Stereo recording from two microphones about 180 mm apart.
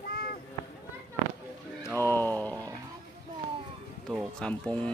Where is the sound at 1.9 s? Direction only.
10° left (ahead or behind).